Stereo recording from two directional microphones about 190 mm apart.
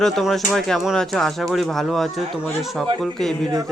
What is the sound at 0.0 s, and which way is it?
Speech, centre (ahead or behind).